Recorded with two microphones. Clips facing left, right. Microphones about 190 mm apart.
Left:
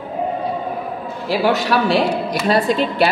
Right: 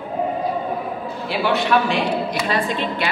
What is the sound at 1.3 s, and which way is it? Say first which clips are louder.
A man's voice: left 2 dB; 40° left (ahead or behind).